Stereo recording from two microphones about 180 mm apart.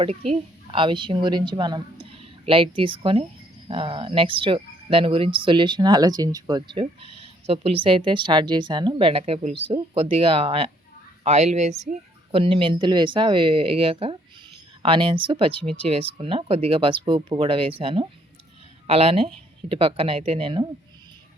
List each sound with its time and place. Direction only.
0.0 s a woman's voice: 35° right (ahead or behind)